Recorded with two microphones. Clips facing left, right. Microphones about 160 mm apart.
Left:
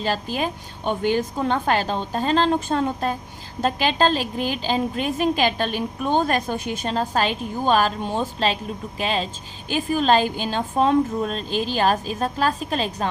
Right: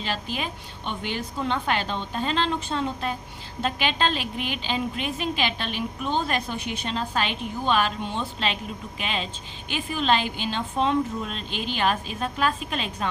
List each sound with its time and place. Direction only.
0.0 s a woman's voice: 40° left (ahead or behind)